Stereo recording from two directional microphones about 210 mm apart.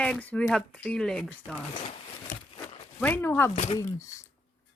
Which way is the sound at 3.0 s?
10° left (ahead or behind).